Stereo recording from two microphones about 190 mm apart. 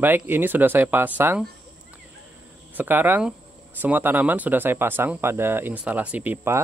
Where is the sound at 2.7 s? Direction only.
10° right (ahead or behind).